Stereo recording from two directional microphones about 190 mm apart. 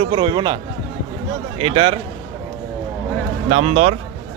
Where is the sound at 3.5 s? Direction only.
30° right (ahead or behind).